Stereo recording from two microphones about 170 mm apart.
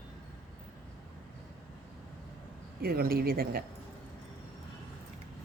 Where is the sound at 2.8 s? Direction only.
65° right (ahead or behind).